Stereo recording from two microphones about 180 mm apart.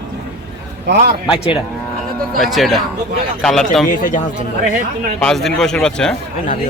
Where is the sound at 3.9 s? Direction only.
50° left (ahead or behind).